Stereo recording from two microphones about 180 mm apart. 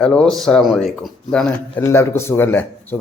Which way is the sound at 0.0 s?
5° left (ahead or behind).